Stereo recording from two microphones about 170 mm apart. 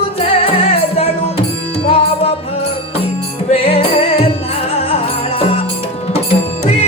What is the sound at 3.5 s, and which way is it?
Music, 35° left (ahead or behind).